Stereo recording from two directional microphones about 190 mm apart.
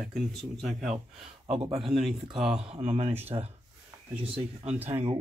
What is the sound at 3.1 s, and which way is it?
Speech, 10° right (ahead or behind).